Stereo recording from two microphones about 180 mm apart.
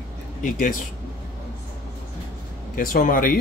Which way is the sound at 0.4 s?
50° left (ahead or behind).